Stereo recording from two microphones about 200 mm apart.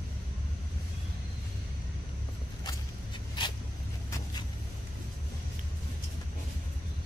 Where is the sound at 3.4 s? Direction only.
25° left (ahead or behind).